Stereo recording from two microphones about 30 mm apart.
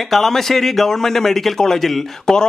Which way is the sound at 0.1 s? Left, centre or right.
Centre.